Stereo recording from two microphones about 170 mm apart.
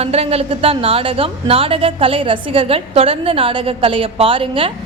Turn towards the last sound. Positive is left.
turn(degrees=-30)  # may be behind; listen again after turning